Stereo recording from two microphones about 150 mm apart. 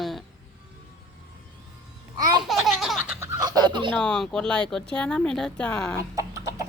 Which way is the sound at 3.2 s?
25° right (ahead or behind).